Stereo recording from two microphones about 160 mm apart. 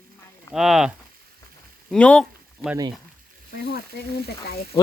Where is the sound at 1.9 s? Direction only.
5° left (ahead or behind).